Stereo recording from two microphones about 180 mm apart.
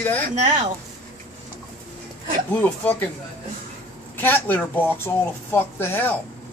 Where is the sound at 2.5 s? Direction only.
10° left (ahead or behind).